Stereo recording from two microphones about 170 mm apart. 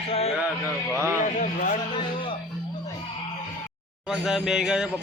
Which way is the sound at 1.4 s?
50° left (ahead or behind).